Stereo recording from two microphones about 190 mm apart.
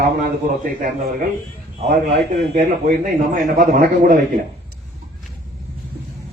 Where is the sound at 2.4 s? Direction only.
45° right (ahead or behind).